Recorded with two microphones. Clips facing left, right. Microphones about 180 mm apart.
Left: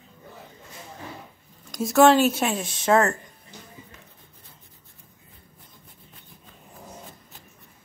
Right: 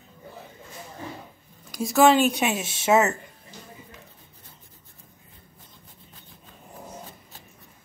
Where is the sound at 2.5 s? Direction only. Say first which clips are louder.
Left 1 dB; 25° right (ahead or behind).